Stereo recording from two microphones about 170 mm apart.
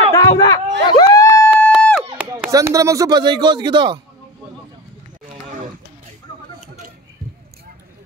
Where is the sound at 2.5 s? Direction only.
20° right (ahead or behind).